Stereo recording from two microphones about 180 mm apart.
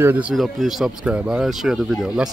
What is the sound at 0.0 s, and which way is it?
Speech, 10° right (ahead or behind).